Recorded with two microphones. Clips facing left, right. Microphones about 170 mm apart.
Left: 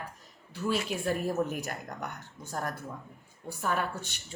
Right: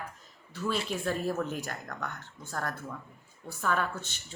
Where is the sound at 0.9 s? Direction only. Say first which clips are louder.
Left 1 dB; 10° left (ahead or behind).